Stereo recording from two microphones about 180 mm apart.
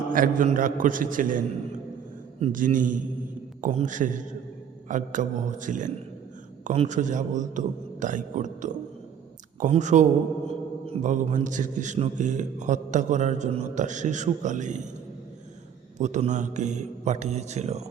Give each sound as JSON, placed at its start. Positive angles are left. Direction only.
{"t": 0.1, "sound": "a man's voice", "side_deg": -50}
{"t": 2.4, "sound": "a man's voice", "side_deg": -45}
{"t": 16.0, "sound": "a man's voice", "side_deg": -40}